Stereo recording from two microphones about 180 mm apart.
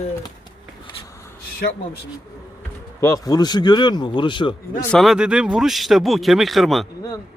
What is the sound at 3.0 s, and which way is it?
Speech, 20° left (ahead or behind).